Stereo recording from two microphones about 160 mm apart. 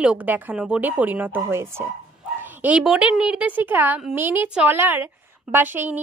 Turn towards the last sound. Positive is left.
turn(degrees=-10)  # may be behind; listen again after turning